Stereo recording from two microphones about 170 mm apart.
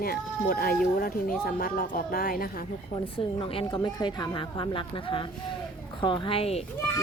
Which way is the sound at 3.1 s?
30° left (ahead or behind).